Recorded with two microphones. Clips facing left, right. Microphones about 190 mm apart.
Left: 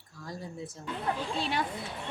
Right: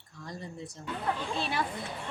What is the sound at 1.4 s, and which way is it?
Speech, 20° left (ahead or behind).